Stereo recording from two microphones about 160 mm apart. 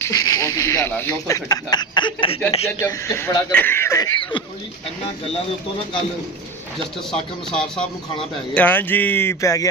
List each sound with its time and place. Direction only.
0.0 s speech: 20° left (ahead or behind)
2.8 s speech: 15° left (ahead or behind)
7.1 s speech: 5° left (ahead or behind); by 9.7 s 20° left (ahead or behind)